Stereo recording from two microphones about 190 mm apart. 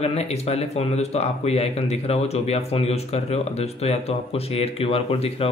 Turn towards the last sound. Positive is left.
turn(degrees=30)  # may be behind; listen again after turning